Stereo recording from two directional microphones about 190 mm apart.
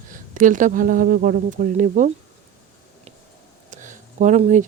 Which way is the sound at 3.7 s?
40° right (ahead or behind).